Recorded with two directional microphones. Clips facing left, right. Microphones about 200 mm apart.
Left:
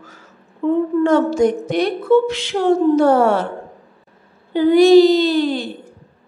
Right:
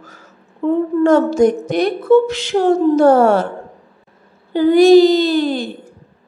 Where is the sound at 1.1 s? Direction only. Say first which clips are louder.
Right 4 dB; 45° right (ahead or behind).